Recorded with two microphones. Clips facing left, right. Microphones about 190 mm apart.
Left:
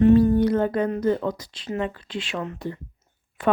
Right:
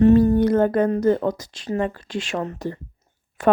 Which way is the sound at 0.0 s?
45° right (ahead or behind).